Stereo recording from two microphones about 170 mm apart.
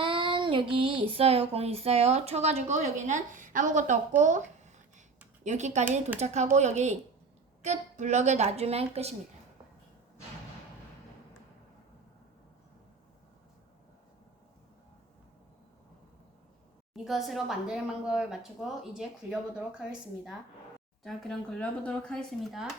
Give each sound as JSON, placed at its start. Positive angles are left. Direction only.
{"t": 0.0, "sound": "child singing", "side_deg": -30}
{"t": 4.2, "sound": "a sound", "side_deg": -45}
{"t": 5.4, "sound": "speech", "side_deg": -45}
{"t": 6.1, "sound": "child singing", "side_deg": -40}
{"t": 6.6, "sound": "a woman's voice", "side_deg": -40}
{"t": 7.6, "sound": "child singing", "side_deg": -45}
{"t": 16.9, "sound": "speech", "side_deg": 0}